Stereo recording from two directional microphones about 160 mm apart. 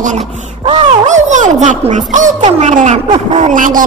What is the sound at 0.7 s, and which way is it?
A woman's voice, 50° right (ahead or behind).